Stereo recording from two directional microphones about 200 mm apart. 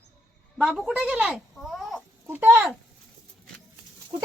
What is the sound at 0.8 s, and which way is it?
Speech, 5° right (ahead or behind).